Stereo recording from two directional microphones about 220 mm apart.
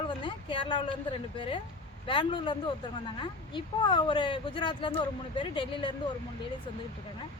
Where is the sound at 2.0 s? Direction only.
20° left (ahead or behind).